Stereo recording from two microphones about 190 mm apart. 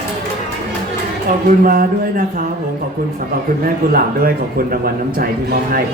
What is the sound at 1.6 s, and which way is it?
Speech, 50° right (ahead or behind).